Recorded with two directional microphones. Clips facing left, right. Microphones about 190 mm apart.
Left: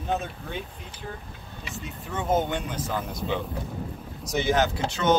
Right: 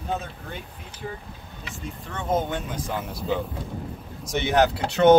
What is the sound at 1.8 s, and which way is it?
Speech, 5° left (ahead or behind).